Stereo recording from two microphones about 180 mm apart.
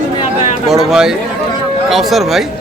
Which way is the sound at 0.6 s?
Centre (ahead or behind).